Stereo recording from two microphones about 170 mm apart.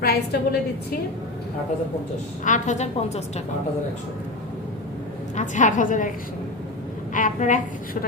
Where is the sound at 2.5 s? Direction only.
45° left (ahead or behind).